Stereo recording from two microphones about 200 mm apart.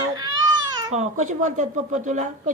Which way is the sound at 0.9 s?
35° right (ahead or behind).